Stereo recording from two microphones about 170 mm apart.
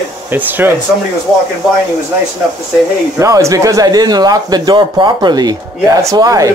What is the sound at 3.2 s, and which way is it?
Speech, 20° right (ahead or behind).